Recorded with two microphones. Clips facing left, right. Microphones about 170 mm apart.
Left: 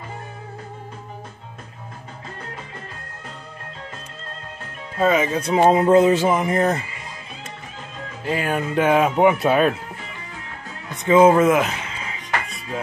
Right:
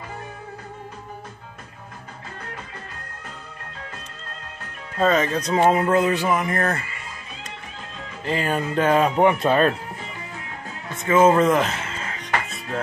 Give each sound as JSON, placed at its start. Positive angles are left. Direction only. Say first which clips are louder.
{"t": 4.9, "sound": "speech", "louder": "left 1 dB", "side_deg": 10}
{"t": 8.2, "sound": "speech", "louder": "left 1 dB", "side_deg": 5}
{"t": 11.0, "sound": "speech", "louder": "left 3 dB", "side_deg": 15}
{"t": 11.9, "sound": "music", "louder": "right 1 dB", "side_deg": 5}